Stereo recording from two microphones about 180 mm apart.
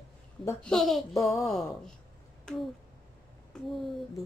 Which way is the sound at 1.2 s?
15° left (ahead or behind).